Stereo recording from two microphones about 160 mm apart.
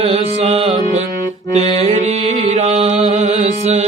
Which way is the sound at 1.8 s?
45° right (ahead or behind).